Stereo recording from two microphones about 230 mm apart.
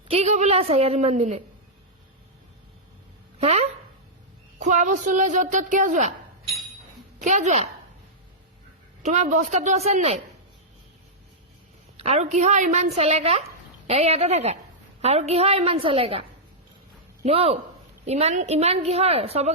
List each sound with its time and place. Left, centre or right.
0.1 s a woman's voice: right
3.3 s a woman's voice: right
7.2 s a woman's voice: right
9.0 s a woman's voice: right
11.9 s a woman's voice: right
17.2 s a woman's voice: right